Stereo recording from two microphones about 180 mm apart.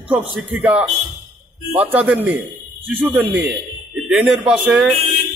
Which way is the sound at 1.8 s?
10° right (ahead or behind).